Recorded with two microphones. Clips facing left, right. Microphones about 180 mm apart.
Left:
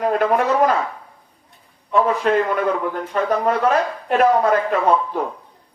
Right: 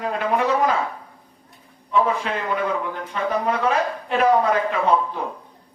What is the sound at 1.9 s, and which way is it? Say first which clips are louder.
A man's voice: left 4 dB; 45° left (ahead or behind).